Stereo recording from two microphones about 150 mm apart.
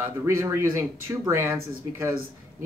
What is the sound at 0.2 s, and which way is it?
Speech, 20° right (ahead or behind).